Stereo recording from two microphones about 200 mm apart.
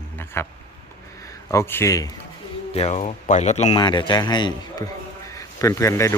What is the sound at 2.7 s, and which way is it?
Speech, 30° left (ahead or behind).